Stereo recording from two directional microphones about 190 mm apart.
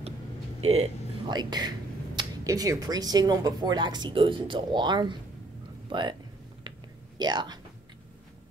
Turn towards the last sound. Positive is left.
turn(degrees=-20)  # may be behind; listen again after turning